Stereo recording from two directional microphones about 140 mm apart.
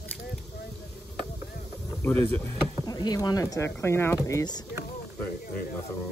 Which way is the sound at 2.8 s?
30° left (ahead or behind).